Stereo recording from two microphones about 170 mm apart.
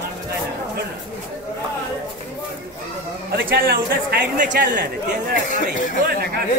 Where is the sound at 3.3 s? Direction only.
65° right (ahead or behind).